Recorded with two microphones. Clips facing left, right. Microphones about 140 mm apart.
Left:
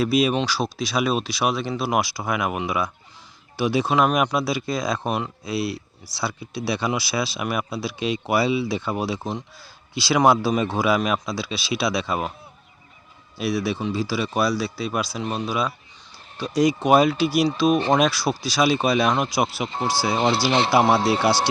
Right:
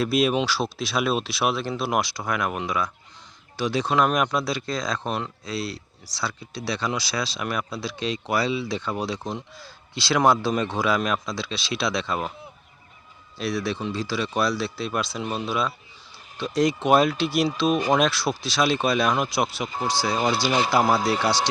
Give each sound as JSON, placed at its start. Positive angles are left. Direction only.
{"t": 0.0, "sound": "speech", "side_deg": 0}
{"t": 13.4, "sound": "speech", "side_deg": 5}
{"t": 19.6, "sound": "speech", "side_deg": 25}
{"t": 19.9, "sound": "speech", "side_deg": 5}
{"t": 20.1, "sound": "speech", "side_deg": 25}
{"t": 20.7, "sound": "speech", "side_deg": 5}